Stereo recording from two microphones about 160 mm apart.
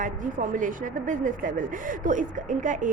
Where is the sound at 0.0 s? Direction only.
55° right (ahead or behind).